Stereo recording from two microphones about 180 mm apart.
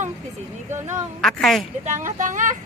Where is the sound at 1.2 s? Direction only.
Centre (ahead or behind).